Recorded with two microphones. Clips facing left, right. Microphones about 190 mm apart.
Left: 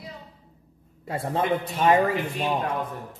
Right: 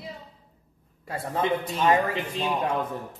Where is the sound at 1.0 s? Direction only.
25° left (ahead or behind).